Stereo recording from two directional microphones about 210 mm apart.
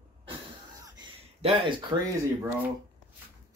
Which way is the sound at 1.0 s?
25° right (ahead or behind).